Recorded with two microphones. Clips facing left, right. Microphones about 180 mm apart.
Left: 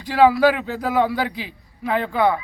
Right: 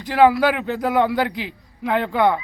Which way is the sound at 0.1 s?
15° right (ahead or behind).